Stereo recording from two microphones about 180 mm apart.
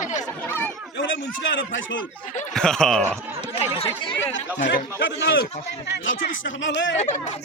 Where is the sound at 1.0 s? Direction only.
90° left.